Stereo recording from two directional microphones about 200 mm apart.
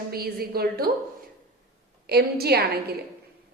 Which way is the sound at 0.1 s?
50° right (ahead or behind).